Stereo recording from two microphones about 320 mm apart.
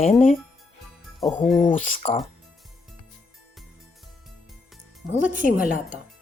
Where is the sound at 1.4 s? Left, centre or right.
Centre.